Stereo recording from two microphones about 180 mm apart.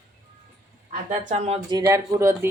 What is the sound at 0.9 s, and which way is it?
Speech, 45° right (ahead or behind).